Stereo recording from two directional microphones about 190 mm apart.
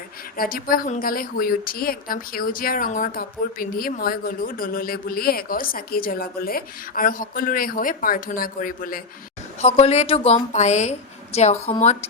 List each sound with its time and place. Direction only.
0.3 s a woman's voice: 50° left (ahead or behind)
9.6 s a woman's voice: 35° left (ahead or behind)